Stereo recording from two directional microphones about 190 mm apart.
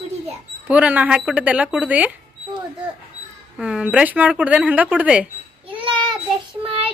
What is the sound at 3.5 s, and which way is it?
Speech, 5° right (ahead or behind).